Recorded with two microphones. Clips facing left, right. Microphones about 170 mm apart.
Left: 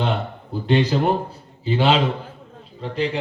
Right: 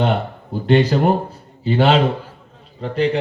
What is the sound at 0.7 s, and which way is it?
A man's voice, 55° right (ahead or behind).